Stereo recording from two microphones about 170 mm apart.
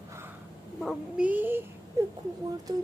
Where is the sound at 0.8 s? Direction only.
Centre (ahead or behind).